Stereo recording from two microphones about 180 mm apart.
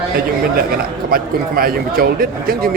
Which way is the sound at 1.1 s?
55° right (ahead or behind).